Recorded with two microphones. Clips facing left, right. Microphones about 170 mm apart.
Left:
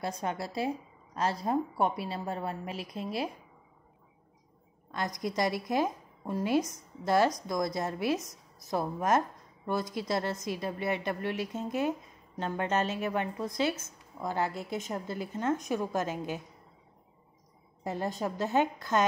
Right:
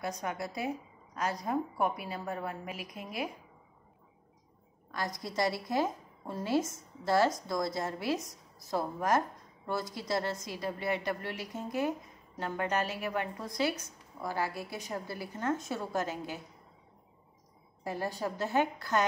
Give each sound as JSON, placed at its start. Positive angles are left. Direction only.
{"t": 0.0, "sound": "a woman's voice", "side_deg": 30}
{"t": 4.9, "sound": "a woman's voice", "side_deg": 20}
{"t": 17.8, "sound": "a woman's voice", "side_deg": 20}